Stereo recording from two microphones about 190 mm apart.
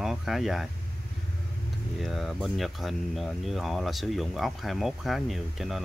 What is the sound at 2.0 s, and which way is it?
Speech, centre (ahead or behind).